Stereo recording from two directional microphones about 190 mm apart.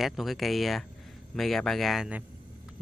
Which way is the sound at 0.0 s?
Centre (ahead or behind).